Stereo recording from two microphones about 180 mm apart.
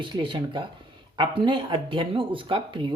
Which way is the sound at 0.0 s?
25° right (ahead or behind).